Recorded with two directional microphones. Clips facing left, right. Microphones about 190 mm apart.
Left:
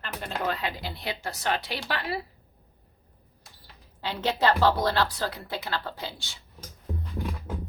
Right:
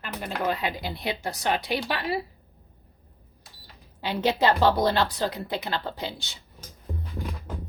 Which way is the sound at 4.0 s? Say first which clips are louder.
Right 2 dB; 15° right (ahead or behind).